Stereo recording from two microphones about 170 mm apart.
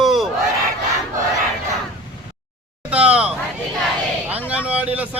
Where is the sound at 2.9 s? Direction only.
5° right (ahead or behind).